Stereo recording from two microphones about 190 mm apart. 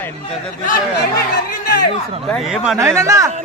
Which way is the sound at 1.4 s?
50° left (ahead or behind).